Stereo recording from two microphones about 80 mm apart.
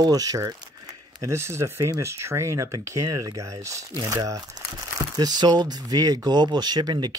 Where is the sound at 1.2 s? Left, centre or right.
Right.